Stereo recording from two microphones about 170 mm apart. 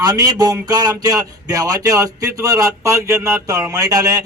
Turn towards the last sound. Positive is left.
turn(degrees=-20)  # may be behind; listen again after turning